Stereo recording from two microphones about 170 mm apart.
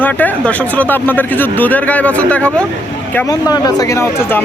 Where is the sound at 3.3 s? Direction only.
20° left (ahead or behind).